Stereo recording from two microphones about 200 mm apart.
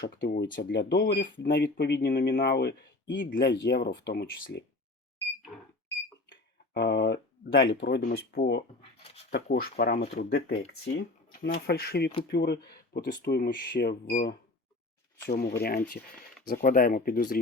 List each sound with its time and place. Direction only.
0.0 s speech: 55° left (ahead or behind)
6.3 s speech: 55° left (ahead or behind)
8.8 s a sound: 30° left (ahead or behind)
9.3 s speech: 50° left (ahead or behind)